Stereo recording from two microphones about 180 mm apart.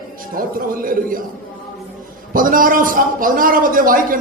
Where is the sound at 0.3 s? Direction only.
50° right (ahead or behind).